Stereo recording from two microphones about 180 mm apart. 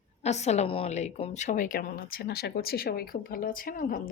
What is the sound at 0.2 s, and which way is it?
A woman's voice, 40° left (ahead or behind).